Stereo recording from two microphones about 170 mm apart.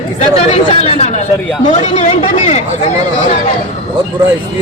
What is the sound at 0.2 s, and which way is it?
Speech, 40° left (ahead or behind).